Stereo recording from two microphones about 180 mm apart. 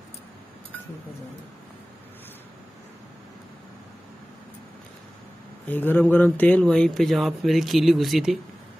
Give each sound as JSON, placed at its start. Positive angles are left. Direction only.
{"t": 5.7, "sound": "speech", "side_deg": 10}